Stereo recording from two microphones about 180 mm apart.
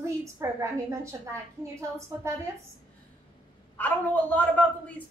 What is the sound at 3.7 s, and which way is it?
Speech, 10° left (ahead or behind).